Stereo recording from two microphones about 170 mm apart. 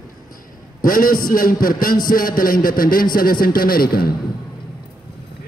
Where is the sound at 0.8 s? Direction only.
55° left (ahead or behind).